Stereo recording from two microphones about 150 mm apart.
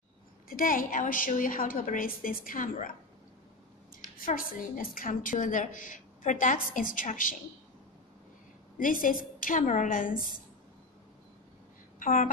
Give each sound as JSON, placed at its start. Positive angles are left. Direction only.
{"t": 0.5, "sound": "a woman's voice", "side_deg": 70}
{"t": 4.2, "sound": "a woman's voice", "side_deg": 65}
{"t": 8.7, "sound": "a woman's voice", "side_deg": 65}
{"t": 12.0, "sound": "a woman's voice", "side_deg": 60}